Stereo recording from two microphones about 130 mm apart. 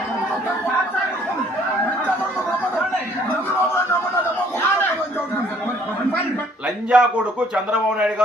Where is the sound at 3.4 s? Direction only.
15° left (ahead or behind).